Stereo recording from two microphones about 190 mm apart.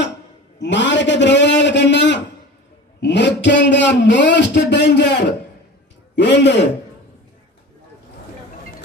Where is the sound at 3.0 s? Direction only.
65° left (ahead or behind).